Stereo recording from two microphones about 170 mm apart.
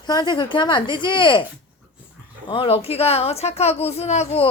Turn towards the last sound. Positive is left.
turn(degrees=40)  # may be behind; listen again after turning